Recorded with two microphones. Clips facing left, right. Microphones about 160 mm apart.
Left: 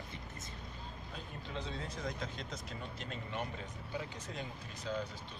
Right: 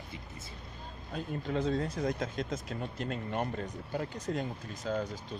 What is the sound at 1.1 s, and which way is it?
Speech, 50° right (ahead or behind).